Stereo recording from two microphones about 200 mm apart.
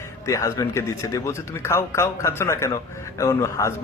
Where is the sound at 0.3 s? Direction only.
15° left (ahead or behind).